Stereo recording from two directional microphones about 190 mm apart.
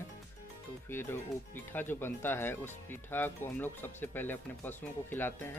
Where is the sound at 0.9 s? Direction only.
10° left (ahead or behind).